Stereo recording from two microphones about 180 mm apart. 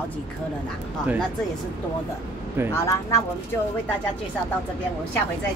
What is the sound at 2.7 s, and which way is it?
Speech, 15° left (ahead or behind).